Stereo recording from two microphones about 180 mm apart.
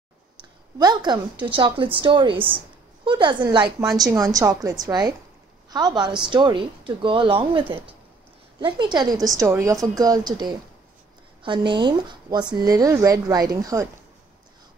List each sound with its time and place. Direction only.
0.4 s a sound: 25° right (ahead or behind)
1.4 s speech: 30° right (ahead or behind)
3.8 s a woman's voice: centre (ahead or behind)
4.1 s a woman's voice: 20° right (ahead or behind)